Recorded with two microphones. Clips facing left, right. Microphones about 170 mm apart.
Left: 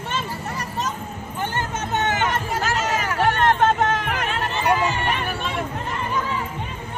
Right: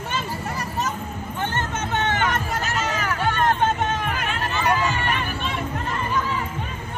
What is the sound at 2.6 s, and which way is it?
Hubbub, 70° left (ahead or behind).